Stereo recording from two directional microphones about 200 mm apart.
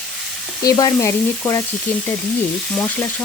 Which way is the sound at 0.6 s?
20° left (ahead or behind).